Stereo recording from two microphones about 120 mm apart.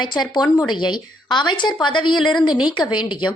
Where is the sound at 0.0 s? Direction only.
35° left (ahead or behind).